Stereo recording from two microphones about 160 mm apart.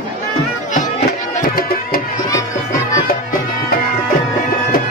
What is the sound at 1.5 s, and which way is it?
Music, 70° left (ahead or behind).